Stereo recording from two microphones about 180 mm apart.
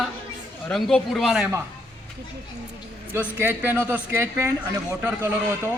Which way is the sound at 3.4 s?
10° right (ahead or behind).